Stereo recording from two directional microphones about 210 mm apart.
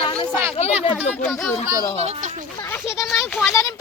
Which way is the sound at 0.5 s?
25° left (ahead or behind).